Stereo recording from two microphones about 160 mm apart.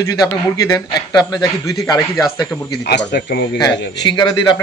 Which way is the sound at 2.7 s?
90° left.